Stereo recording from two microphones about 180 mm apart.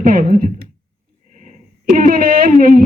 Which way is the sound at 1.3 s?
45° right (ahead or behind).